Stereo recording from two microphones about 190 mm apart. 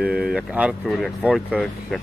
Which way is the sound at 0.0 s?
5° right (ahead or behind).